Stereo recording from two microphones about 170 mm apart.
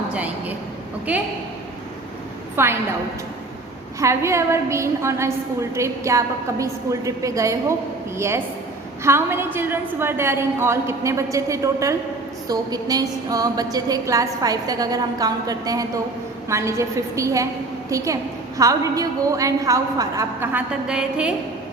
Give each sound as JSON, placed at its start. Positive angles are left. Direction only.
{"t": 0.1, "sound": "a woman's voice", "side_deg": -10}
{"t": 2.6, "sound": "a woman's voice", "side_deg": -15}
{"t": 4.0, "sound": "a woman's voice", "side_deg": -15}
{"t": 9.0, "sound": "a woman's voice", "side_deg": -15}